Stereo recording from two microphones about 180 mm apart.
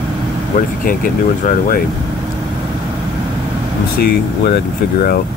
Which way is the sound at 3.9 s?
60° left (ahead or behind).